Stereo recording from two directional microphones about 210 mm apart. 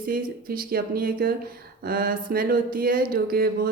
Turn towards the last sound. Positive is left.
turn(degrees=-45)  # may be behind; listen again after turning